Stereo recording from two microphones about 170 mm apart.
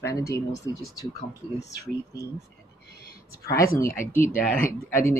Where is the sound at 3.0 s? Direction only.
65° left (ahead or behind).